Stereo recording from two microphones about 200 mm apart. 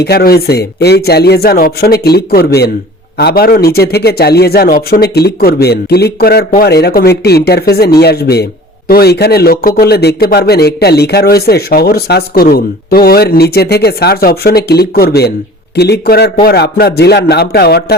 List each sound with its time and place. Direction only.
0.0 s speech: 50° left (ahead or behind)